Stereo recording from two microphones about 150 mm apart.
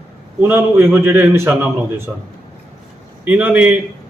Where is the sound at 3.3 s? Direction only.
10° right (ahead or behind).